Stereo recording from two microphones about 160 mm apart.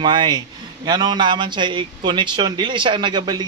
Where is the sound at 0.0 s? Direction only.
30° right (ahead or behind).